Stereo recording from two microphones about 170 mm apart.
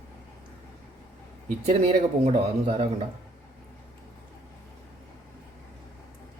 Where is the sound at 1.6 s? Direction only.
40° right (ahead or behind).